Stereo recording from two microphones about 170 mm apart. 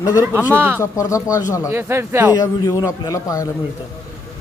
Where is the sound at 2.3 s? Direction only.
20° left (ahead or behind).